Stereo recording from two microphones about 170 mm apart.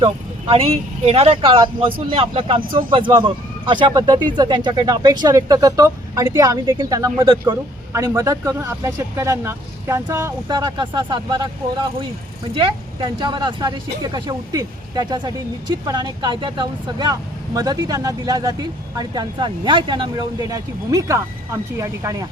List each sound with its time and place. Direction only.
0.0 s speech: 35° right (ahead or behind)